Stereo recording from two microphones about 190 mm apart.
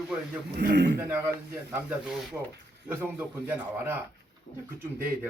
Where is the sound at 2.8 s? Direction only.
10° right (ahead or behind).